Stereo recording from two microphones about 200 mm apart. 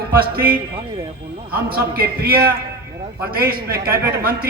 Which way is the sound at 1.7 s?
50° right (ahead or behind).